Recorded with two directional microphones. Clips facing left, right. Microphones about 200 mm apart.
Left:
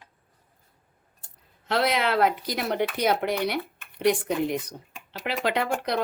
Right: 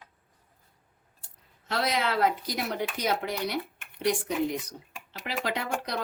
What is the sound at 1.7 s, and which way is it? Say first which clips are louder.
Speech: left 4 dB; 60° left (ahead or behind).